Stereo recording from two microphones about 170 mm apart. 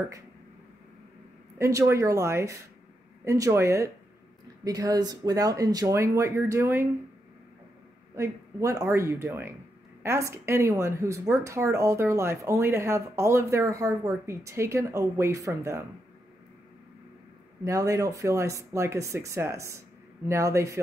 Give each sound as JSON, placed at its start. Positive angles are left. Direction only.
{"t": 1.6, "sound": "speech", "side_deg": -15}
{"t": 8.2, "sound": "speech", "side_deg": -15}
{"t": 17.6, "sound": "speech", "side_deg": -20}